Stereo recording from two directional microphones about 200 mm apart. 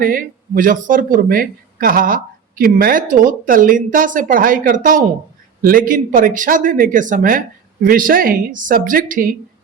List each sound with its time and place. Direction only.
0.0 s speech: 45° right (ahead or behind)